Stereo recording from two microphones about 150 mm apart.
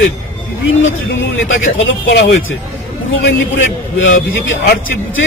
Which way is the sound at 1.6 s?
60° left (ahead or behind).